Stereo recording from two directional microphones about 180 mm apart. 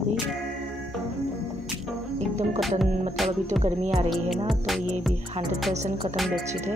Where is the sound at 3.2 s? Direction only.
Centre (ahead or behind).